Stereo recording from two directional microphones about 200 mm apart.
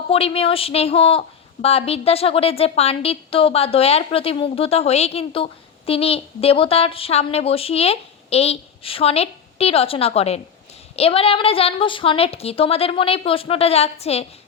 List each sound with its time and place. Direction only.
0.1 s a woman's voice: 30° left (ahead or behind)